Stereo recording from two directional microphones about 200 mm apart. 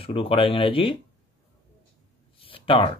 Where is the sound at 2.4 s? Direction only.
25° left (ahead or behind).